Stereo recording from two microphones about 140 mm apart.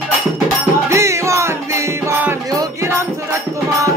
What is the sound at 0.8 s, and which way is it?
Music, 20° right (ahead or behind).